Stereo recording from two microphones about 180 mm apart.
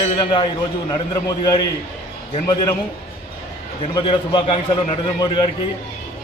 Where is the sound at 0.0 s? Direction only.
25° left (ahead or behind).